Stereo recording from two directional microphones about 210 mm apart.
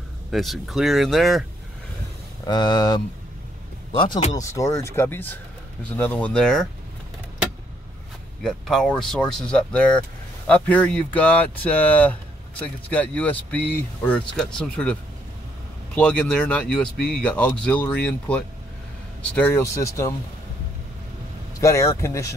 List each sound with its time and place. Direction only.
0.3 s speech: centre (ahead or behind)
2.4 s speech: 20° left (ahead or behind); by 6.6 s 5° left (ahead or behind)
8.4 s speech: centre (ahead or behind)
21.5 s speech: 15° left (ahead or behind)